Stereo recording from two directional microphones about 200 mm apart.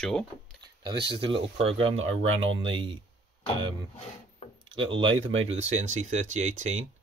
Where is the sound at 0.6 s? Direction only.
20° right (ahead or behind).